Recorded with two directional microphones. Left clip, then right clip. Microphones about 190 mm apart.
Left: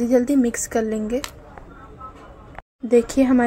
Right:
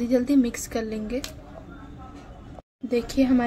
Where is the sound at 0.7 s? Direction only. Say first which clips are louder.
Left 7 dB; 20° left (ahead or behind).